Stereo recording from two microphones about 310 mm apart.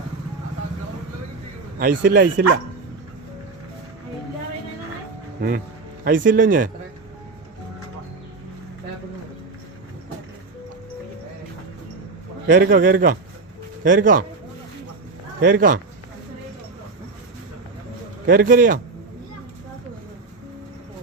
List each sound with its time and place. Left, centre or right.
1.8 s a man's voice: right
2.3 s speech: right
6.1 s a man's voice: right
12.5 s a man's voice: right
15.4 s a man's voice: right
18.3 s a man's voice: right